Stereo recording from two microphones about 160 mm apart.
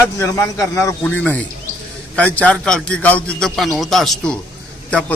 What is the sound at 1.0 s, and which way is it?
A man's voice, 10° left (ahead or behind).